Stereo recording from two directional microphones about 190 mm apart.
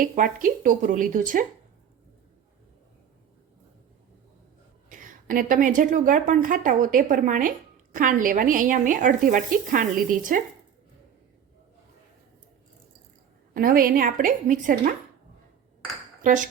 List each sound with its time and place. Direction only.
0.0 s a woman's voice: 45° right (ahead or behind)
4.9 s a woman's voice: 45° right (ahead or behind)
13.5 s a woman's voice: 50° right (ahead or behind)
16.2 s speech: 45° right (ahead or behind)